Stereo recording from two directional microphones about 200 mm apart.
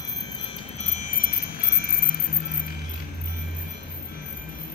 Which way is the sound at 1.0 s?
45° left (ahead or behind).